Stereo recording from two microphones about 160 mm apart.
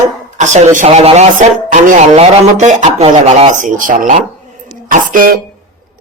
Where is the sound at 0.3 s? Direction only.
50° right (ahead or behind).